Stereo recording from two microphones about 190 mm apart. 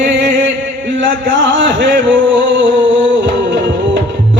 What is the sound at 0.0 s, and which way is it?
Music, 70° right (ahead or behind).